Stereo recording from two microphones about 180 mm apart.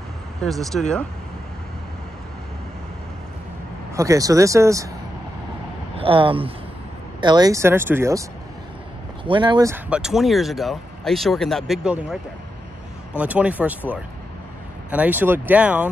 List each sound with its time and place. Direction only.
0.4 s speech: centre (ahead or behind)
3.9 s speech: 15° right (ahead or behind)
5.9 s speech: 30° right (ahead or behind)
9.2 s speech: 25° right (ahead or behind)
9.8 s speech: 5° right (ahead or behind)
13.2 s speech: 10° right (ahead or behind)